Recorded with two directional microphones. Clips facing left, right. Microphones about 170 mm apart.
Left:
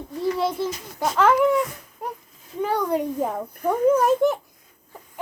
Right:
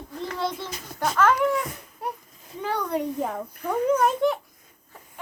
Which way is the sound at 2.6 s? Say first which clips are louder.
Left 4 dB; 5° left (ahead or behind).